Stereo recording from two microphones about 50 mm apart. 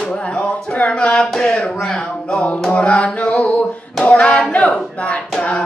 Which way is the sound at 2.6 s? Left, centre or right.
Centre.